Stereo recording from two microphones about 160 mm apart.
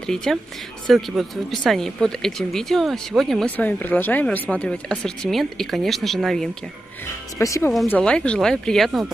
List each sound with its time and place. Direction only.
0.0 s speech: 5° left (ahead or behind)
7.3 s speech: 20° left (ahead or behind)
7.9 s speech: 5° left (ahead or behind)